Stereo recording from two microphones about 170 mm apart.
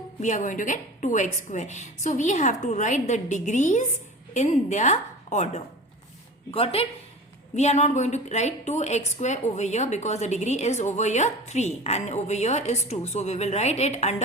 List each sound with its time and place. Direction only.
0.2 s a woman's voice: 45° left (ahead or behind)